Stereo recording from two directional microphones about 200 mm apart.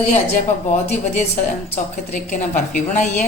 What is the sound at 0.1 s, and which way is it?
Speech, 35° left (ahead or behind).